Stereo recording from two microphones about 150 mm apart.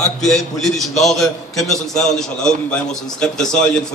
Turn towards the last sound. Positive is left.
turn(degrees=5)  # may be behind; listen again after turning